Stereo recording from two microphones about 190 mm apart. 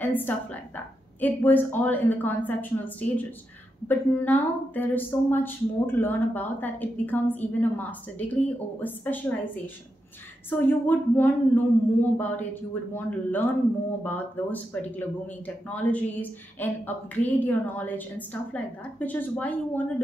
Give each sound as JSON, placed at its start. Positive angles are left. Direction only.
{"t": 0.0, "sound": "speech", "side_deg": 10}
{"t": 10.5, "sound": "speech", "side_deg": 10}